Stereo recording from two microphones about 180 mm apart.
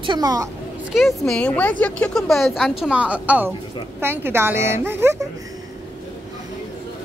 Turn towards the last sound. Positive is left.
turn(degrees=-15)  # may be behind; listen again after turning